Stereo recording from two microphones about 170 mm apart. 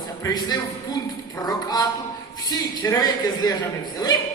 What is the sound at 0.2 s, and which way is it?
A man's voice, 20° left (ahead or behind).